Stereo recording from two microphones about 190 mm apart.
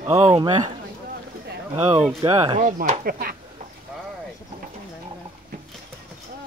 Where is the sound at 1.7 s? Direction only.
30° right (ahead or behind).